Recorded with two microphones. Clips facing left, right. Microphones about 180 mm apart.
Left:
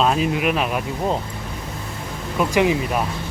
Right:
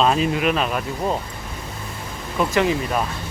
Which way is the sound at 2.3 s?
15° left (ahead or behind).